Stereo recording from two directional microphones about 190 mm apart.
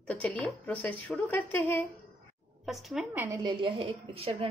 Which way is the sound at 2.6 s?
Centre (ahead or behind).